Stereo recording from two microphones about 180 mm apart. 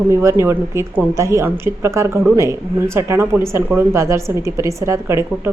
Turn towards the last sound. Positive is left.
turn(degrees=-15)  # may be behind; listen again after turning